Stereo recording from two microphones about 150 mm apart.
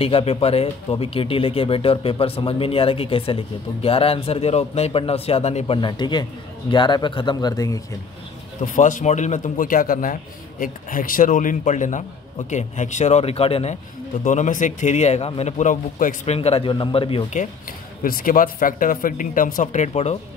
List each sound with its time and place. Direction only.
0.0 s speech: 40° left (ahead or behind)
5.8 s speech: 30° left (ahead or behind)
8.7 s speech: 60° left (ahead or behind); by 13.7 s 40° left (ahead or behind)
14.2 s speech: 55° left (ahead or behind)
16.3 s speech: 40° left (ahead or behind)
17.3 s speech: 65° left (ahead or behind); by 20.2 s 45° left (ahead or behind)